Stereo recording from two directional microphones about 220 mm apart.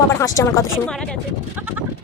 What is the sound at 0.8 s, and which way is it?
Speech, 5° left (ahead or behind).